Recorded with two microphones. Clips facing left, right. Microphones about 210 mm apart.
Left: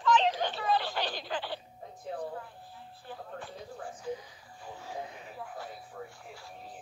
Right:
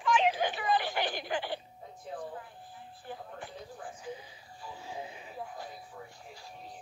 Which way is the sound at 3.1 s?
15° right (ahead or behind).